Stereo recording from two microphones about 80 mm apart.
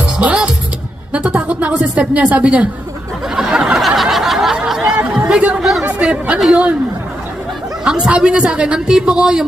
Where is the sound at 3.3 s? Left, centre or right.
Centre.